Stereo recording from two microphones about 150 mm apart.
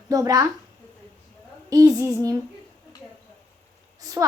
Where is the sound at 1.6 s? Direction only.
25° right (ahead or behind).